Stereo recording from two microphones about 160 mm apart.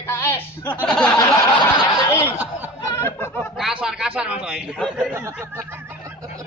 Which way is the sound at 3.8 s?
5° right (ahead or behind).